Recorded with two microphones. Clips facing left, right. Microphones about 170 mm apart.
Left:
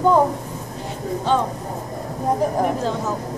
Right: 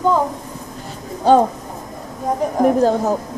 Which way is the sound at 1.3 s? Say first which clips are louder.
Right 8 dB; 40° right (ahead or behind).